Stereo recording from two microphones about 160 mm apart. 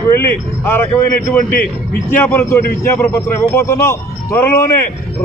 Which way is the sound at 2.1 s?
15° left (ahead or behind).